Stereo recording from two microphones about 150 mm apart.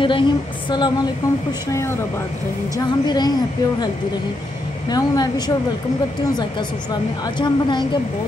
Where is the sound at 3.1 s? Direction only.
30° left (ahead or behind).